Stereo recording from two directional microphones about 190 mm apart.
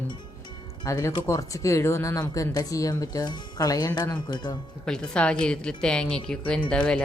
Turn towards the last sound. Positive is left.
turn(degrees=5)  # may be behind; listen again after turning